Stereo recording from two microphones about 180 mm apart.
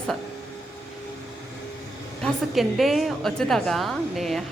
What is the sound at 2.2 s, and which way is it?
A woman's voice, centre (ahead or behind).